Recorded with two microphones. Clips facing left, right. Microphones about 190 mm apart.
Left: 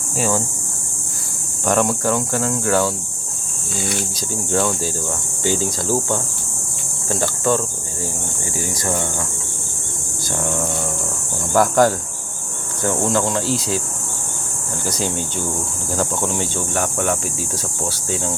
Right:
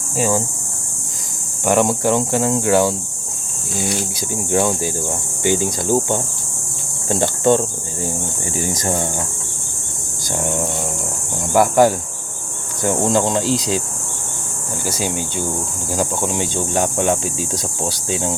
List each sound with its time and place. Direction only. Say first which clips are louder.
0.2 s speech: right 2 dB; 15° right (ahead or behind)
1.6 s speech: right 2 dB; 15° right (ahead or behind)
4.5 s speech: right 2 dB; 15° right (ahead or behind)
8.7 s speech: right 1 dB; 25° right (ahead or behind)
11.5 s speech: right 2 dB; 10° right (ahead or behind)
14.8 s speech: right 1 dB; 10° right (ahead or behind)